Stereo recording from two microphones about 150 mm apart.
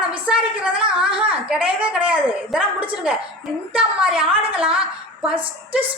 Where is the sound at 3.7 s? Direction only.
10° right (ahead or behind).